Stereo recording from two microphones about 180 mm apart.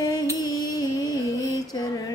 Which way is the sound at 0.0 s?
20° left (ahead or behind).